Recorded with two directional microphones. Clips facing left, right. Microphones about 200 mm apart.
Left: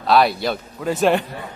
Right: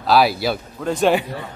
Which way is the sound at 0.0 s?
5° right (ahead or behind).